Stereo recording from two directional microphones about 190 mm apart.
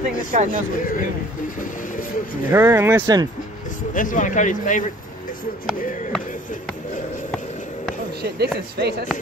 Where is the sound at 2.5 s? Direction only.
15° right (ahead or behind).